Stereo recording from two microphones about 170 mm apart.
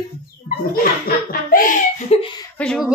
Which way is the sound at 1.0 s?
55° left (ahead or behind).